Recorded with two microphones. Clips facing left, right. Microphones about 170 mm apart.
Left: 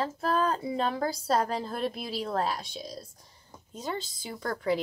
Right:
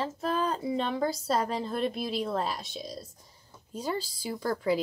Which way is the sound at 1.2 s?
Centre (ahead or behind).